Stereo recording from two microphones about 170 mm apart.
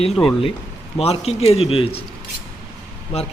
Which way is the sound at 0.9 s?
35° left (ahead or behind).